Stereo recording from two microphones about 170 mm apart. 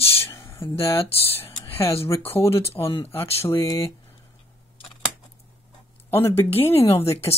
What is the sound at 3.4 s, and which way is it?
Speech, 15° left (ahead or behind).